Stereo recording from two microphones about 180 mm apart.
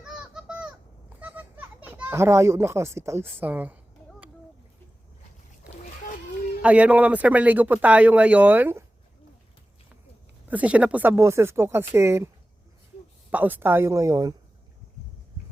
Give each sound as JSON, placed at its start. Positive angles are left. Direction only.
{"t": 0.0, "sound": "a sound", "side_deg": -5}
{"t": 1.2, "sound": "a child's voice", "side_deg": -10}
{"t": 6.6, "sound": "speech", "side_deg": -5}
{"t": 10.5, "sound": "speech", "side_deg": -10}
{"t": 13.3, "sound": "speech", "side_deg": -10}